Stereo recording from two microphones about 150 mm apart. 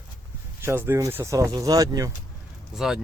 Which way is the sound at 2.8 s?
5° right (ahead or behind).